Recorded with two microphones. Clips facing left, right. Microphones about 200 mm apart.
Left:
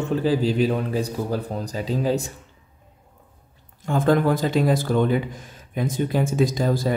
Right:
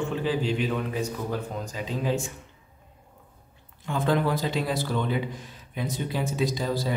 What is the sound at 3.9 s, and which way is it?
Speech, 45° left (ahead or behind).